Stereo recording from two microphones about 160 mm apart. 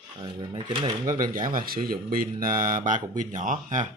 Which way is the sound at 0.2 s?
30° right (ahead or behind).